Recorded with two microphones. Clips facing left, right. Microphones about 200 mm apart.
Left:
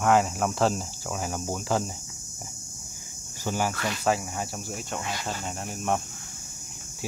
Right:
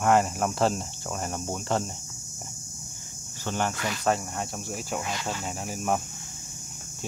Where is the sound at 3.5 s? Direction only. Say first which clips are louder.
Left 1 dB; 5° left (ahead or behind).